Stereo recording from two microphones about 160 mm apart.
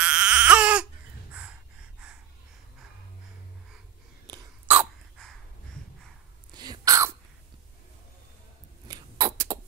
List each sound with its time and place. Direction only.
0.0 s baby cry: 5° right (ahead or behind)
1.3 s gasp: 10° right (ahead or behind)
4.3 s a sound: 25° right (ahead or behind)
4.6 s hiccup: 10° right (ahead or behind)
6.5 s throat clearing: 25° right (ahead or behind)
8.8 s a sound: 20° right (ahead or behind)